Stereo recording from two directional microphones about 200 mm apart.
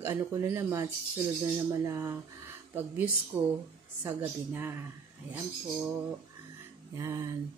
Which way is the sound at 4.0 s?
10° right (ahead or behind).